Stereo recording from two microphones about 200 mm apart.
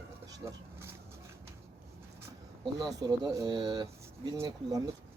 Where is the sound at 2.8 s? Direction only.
20° right (ahead or behind).